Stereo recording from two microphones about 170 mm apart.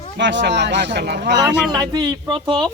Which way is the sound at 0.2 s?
90° right.